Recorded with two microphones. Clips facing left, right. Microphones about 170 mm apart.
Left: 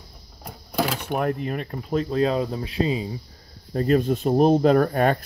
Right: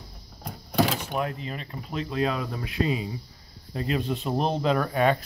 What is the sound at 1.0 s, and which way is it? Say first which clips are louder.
Speech: left 5 dB; 55° left (ahead or behind).